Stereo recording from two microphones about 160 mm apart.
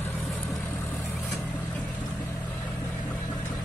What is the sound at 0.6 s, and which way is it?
Vehicle, 15° left (ahead or behind).